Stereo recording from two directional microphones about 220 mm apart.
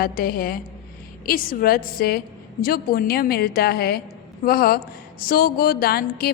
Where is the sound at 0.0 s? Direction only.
40° left (ahead or behind).